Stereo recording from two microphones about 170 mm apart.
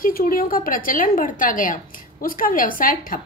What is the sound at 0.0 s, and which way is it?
A woman's voice, 55° left (ahead or behind).